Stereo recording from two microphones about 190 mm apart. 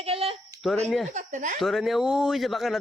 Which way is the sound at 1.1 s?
40° right (ahead or behind).